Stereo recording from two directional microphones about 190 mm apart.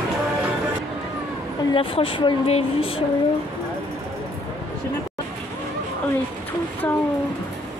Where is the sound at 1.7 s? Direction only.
30° left (ahead or behind).